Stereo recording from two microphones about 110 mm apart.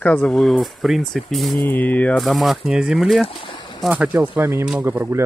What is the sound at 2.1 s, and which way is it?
Speech, centre (ahead or behind).